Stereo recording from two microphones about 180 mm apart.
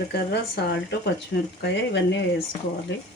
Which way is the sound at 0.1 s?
65° left (ahead or behind).